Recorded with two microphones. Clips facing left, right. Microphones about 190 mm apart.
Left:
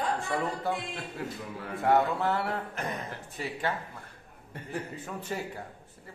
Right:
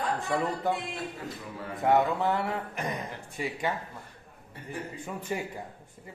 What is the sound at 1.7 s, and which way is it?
Speech, 20° right (ahead or behind).